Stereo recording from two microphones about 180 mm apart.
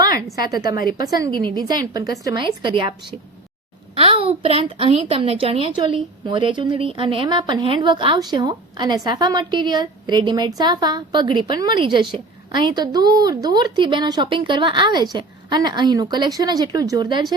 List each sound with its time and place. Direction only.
0.4 s a woman's voice: 20° right (ahead or behind)
3.9 s a woman's voice: 30° right (ahead or behind)